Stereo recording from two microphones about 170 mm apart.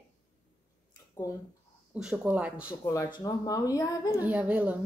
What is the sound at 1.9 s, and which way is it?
Speech, 5° right (ahead or behind).